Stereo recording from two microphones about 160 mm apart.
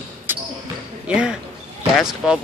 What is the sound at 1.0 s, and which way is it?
Speech, 5° right (ahead or behind).